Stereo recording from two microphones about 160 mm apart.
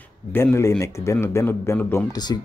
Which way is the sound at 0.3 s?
15° left (ahead or behind).